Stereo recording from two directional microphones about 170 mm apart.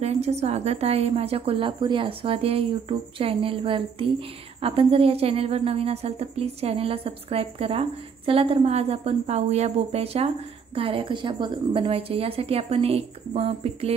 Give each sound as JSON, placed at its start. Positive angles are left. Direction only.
{"t": 0.0, "sound": "a woman's voice", "side_deg": -40}